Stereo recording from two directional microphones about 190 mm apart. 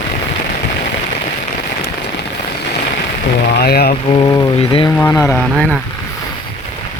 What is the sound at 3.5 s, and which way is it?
Speech, 55° left (ahead or behind).